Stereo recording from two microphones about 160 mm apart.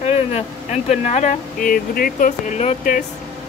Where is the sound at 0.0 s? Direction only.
40° left (ahead or behind).